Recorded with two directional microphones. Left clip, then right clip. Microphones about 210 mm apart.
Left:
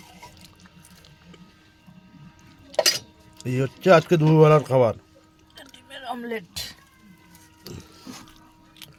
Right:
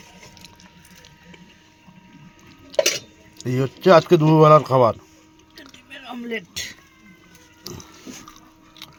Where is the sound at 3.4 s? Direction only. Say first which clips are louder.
Right 2 dB; 5° left (ahead or behind).